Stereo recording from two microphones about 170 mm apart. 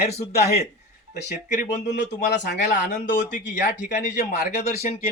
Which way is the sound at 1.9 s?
90° left.